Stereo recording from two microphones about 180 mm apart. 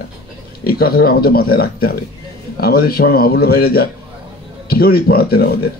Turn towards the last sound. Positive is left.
turn(degrees=60)  # may be behind; listen again after turning